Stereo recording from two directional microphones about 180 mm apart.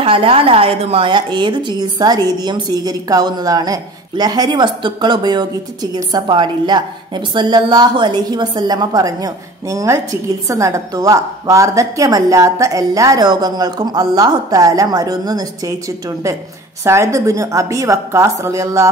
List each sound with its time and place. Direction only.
0.0 s a woman's voice: 30° right (ahead or behind)
16.8 s a woman's voice: 15° right (ahead or behind)